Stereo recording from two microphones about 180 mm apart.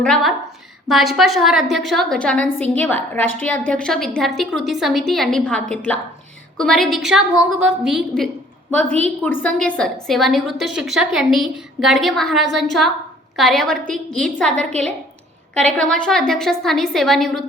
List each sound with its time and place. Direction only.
0.0 s a woman's voice: centre (ahead or behind)
14.6 s a woman's voice: 40° right (ahead or behind)
15.5 s a woman's voice: 5° left (ahead or behind)